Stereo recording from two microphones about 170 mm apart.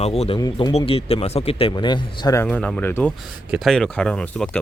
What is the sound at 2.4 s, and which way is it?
Speech, 10° left (ahead or behind).